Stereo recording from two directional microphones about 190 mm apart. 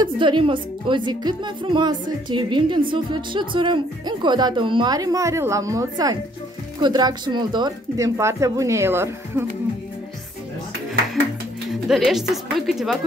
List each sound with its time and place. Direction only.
0.0 s speech: 25° right (ahead or behind)
11.7 s a woman's voice: centre (ahead or behind)